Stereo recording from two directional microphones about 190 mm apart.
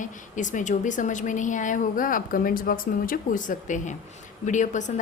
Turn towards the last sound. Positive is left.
turn(degrees=40)  # may be behind; listen again after turning